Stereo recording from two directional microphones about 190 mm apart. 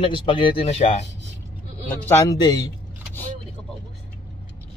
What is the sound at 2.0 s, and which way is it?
Speech, 20° left (ahead or behind).